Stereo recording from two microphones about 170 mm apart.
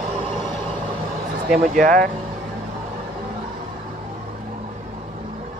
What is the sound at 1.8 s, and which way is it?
Speech, 55° right (ahead or behind).